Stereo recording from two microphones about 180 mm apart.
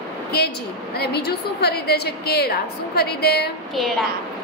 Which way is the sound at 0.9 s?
65° left (ahead or behind).